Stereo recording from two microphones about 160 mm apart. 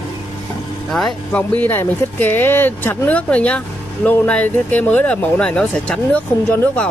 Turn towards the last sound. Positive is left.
turn(degrees=10)  # may be behind; listen again after turning